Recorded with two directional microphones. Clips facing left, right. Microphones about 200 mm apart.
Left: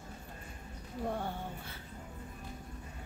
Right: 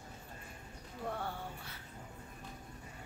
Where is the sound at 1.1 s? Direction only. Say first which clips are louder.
Left 3 dB; 15° left (ahead or behind).